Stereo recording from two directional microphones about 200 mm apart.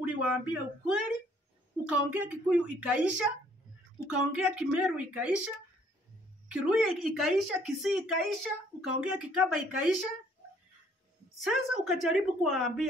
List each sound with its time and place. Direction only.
0.0 s a woman's voice: 5° right (ahead or behind)
4.4 s a woman's voice: 5° right (ahead or behind)
6.5 s a woman's voice: centre (ahead or behind)
11.3 s a woman's voice: centre (ahead or behind)